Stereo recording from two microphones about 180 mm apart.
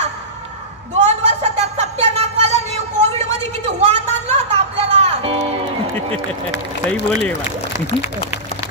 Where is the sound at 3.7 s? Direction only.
35° right (ahead or behind).